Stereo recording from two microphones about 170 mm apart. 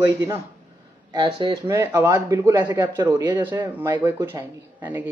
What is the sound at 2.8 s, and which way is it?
Speech, 25° right (ahead or behind).